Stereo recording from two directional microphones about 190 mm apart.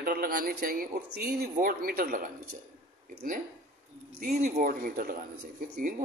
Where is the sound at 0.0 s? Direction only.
50° right (ahead or behind).